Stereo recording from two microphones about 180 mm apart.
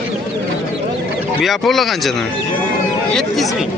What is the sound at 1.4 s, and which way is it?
Speech, centre (ahead or behind).